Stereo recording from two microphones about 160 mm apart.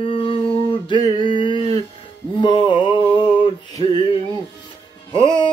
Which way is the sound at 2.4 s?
30° left (ahead or behind).